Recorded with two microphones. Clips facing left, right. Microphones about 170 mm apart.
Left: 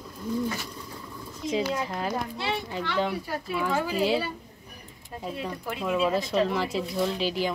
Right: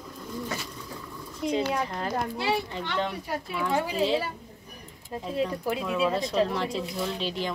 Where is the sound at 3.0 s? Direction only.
5° left (ahead or behind).